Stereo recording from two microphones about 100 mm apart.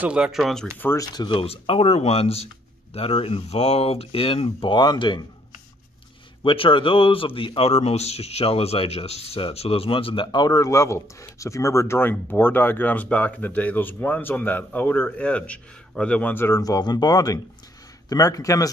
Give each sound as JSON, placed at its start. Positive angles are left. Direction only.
{"t": 0.0, "sound": "speech", "side_deg": -10}
{"t": 0.9, "sound": "speech", "side_deg": 45}
{"t": 1.4, "sound": "speech", "side_deg": 75}
{"t": 6.4, "sound": "speech", "side_deg": 60}
{"t": 10.2, "sound": "speech", "side_deg": 45}
{"t": 16.6, "sound": "speech", "side_deg": 40}